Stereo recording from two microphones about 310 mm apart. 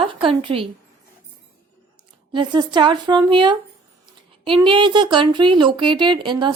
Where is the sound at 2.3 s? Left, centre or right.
Centre.